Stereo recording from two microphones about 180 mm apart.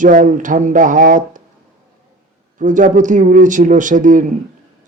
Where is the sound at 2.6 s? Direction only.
45° right (ahead or behind).